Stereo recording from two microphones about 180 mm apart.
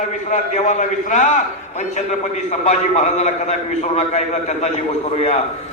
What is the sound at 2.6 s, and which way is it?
A man's voice, 40° left (ahead or behind).